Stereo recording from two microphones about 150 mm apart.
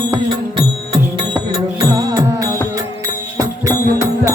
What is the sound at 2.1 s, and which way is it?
Music, 25° right (ahead or behind).